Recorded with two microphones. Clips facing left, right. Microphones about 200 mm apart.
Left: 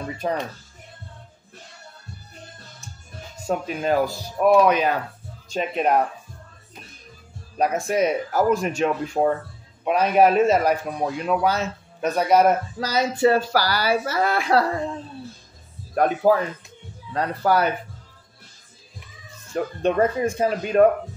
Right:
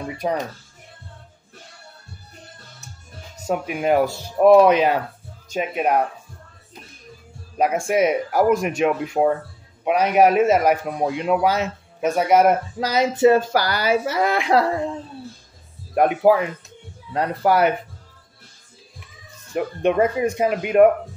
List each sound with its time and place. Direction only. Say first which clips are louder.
0.0 s speech: right 2 dB; 15° right (ahead or behind)
3.5 s a man's voice: right 3 dB; 15° right (ahead or behind)
5.5 s speech: even; 10° right (ahead or behind)
7.5 s a man's voice: right 2 dB; 15° right (ahead or behind)
15.9 s a man's voice: right 2 dB; 15° right (ahead or behind)
19.5 s speech: right 2 dB; 15° right (ahead or behind)